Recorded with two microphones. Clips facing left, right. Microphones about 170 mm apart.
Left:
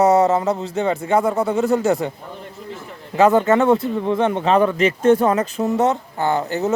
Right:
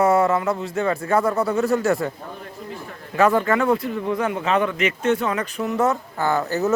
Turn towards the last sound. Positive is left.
turn(degrees=20)  # may be behind; listen again after turning